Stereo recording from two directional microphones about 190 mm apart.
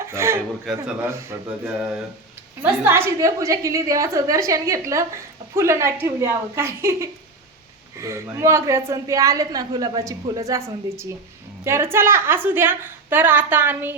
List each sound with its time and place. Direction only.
0.0 s speech: 15° right (ahead or behind)
0.7 s a man's voice: centre (ahead or behind); by 10.6 s 15° right (ahead or behind)
11.6 s a woman's voice: 15° right (ahead or behind)